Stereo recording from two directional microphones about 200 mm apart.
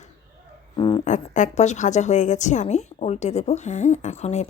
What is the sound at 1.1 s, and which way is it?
A woman's voice, 35° left (ahead or behind).